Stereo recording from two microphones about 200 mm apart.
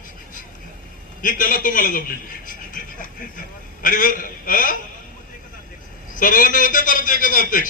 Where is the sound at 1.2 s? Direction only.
45° left (ahead or behind).